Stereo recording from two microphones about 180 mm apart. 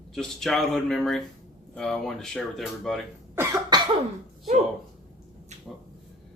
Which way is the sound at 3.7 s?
25° right (ahead or behind).